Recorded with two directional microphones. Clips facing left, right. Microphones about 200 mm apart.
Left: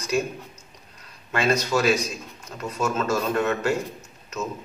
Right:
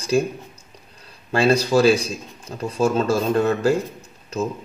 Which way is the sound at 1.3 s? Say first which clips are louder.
Right 6 dB; 30° right (ahead or behind).